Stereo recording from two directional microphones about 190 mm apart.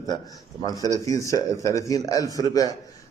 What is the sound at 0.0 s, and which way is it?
A man's voice, 20° left (ahead or behind).